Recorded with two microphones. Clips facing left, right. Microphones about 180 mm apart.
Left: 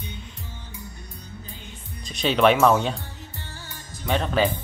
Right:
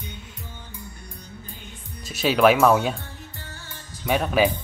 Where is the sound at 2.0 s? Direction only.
5° right (ahead or behind).